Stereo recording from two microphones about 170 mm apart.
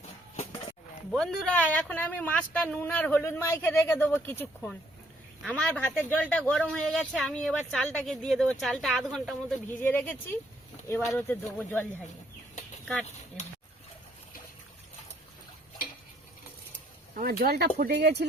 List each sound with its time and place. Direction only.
1.1 s speech: 5° left (ahead or behind)
17.4 s speech: 70° right (ahead or behind)